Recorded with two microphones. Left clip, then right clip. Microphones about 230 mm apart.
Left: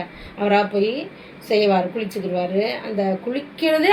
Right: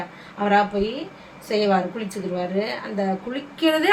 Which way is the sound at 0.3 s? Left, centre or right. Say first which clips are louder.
Left 1 dB; centre.